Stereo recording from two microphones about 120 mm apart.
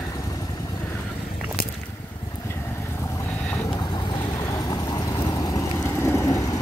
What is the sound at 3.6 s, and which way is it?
Vehicle, 30° left (ahead or behind).